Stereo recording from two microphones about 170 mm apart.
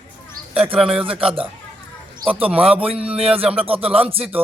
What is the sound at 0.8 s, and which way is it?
Speech, 5° right (ahead or behind).